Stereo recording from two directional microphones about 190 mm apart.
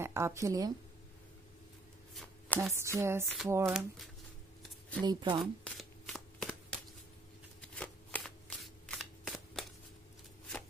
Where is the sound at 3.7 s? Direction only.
Centre (ahead or behind).